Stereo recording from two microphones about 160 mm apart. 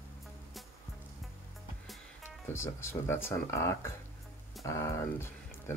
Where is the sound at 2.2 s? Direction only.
15° left (ahead or behind).